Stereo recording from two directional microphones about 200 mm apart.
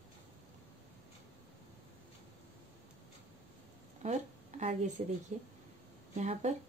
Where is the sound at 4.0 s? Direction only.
35° right (ahead or behind).